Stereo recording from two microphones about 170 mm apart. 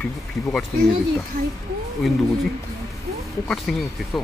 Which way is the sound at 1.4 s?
60° right (ahead or behind).